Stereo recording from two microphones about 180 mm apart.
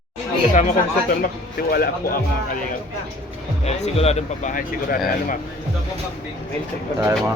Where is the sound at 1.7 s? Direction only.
55° left (ahead or behind).